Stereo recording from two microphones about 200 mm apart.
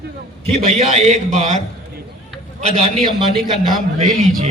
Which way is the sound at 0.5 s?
35° right (ahead or behind).